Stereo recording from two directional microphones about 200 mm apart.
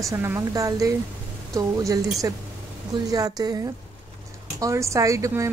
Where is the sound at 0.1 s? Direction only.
15° right (ahead or behind).